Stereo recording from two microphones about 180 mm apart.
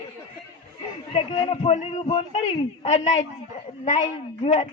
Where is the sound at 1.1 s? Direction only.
30° left (ahead or behind).